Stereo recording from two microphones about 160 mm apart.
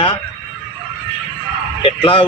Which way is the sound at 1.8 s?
35° left (ahead or behind).